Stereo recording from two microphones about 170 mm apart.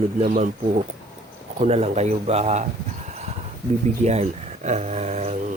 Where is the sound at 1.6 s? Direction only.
40° right (ahead or behind).